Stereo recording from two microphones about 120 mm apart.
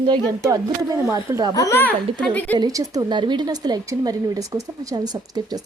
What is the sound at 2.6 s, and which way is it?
A woman's voice, 30° right (ahead or behind).